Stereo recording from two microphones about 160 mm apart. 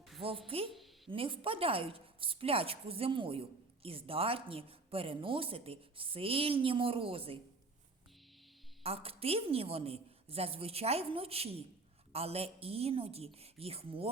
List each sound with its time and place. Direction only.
0.2 s a woman's voice: 35° right (ahead or behind)
8.8 s a woman's voice: 40° right (ahead or behind)